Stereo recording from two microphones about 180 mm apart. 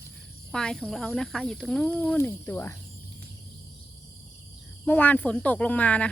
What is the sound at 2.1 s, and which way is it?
Speech, 10° left (ahead or behind).